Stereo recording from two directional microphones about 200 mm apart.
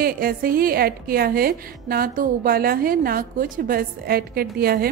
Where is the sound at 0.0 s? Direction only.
50° right (ahead or behind).